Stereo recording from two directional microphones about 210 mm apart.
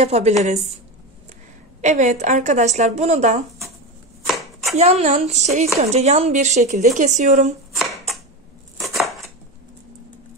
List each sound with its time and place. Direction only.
0.0 s speech: 30° right (ahead or behind)
1.8 s speech: 35° right (ahead or behind)
4.7 s speech: 30° right (ahead or behind)
7.7 s a sound: centre (ahead or behind)